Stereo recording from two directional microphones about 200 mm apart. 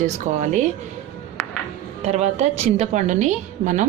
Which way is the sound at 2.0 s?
35° right (ahead or behind).